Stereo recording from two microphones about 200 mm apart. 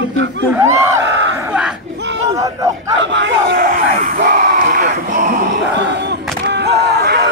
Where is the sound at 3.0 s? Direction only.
65° right (ahead or behind); by 4.8 s 40° right (ahead or behind).